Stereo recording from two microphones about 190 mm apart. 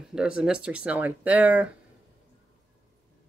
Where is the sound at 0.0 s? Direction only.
5° right (ahead or behind).